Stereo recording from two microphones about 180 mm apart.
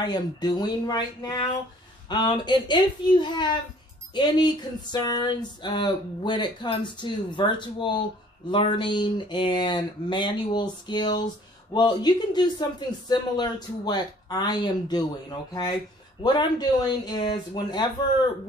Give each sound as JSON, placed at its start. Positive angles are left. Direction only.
{"t": 0.0, "sound": "speech", "side_deg": 25}
{"t": 16.2, "sound": "speech", "side_deg": 25}